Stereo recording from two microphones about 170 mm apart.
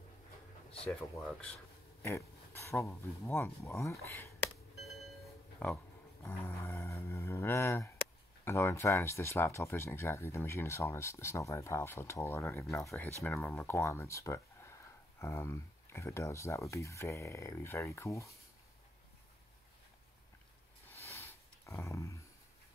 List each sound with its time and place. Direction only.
1.2 s speech: 5° left (ahead or behind)
6.4 s speech: 15° left (ahead or behind)
20.9 s a sound: 15° left (ahead or behind)